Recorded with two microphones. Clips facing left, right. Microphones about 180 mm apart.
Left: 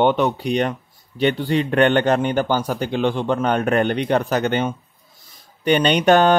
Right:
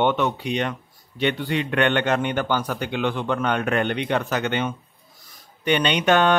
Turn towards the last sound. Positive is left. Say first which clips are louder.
# left 4 dB
turn(degrees=35)  # may be behind; listen again after turning